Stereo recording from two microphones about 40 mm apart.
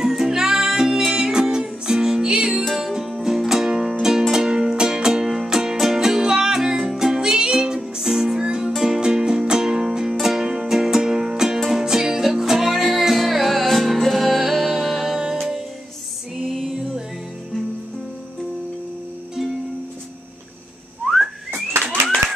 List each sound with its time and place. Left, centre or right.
0.0 s music: centre
2.6 s music: centre
8.4 s music: centre
16.3 s music: centre
16.7 s music: centre
21.0 s whistling: centre